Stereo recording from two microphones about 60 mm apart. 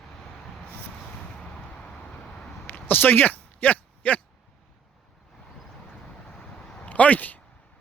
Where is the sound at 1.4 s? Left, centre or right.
Centre.